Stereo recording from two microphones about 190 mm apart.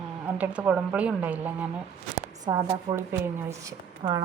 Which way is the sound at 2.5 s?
20° right (ahead or behind).